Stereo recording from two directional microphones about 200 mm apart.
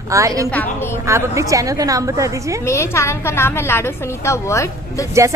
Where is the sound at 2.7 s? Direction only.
15° left (ahead or behind).